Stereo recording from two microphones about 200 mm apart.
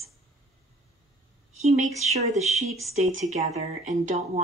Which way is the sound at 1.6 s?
35° right (ahead or behind).